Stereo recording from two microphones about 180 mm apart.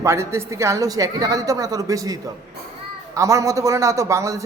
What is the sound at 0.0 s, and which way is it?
A woman's voice, 15° right (ahead or behind).